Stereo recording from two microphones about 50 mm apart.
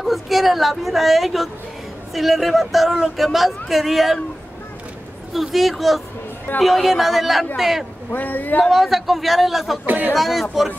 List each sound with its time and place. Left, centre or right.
0.0 s a man's voice: centre
5.3 s a man's voice: centre
8.1 s speech: left
8.6 s a man's voice: centre
9.8 s speech: right
10.1 s a man's voice: centre